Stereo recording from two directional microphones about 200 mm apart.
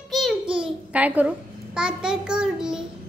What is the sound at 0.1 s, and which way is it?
Babbling, 5° right (ahead or behind).